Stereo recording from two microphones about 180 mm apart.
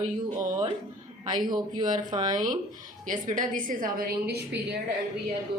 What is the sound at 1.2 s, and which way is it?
Speech, 25° right (ahead or behind).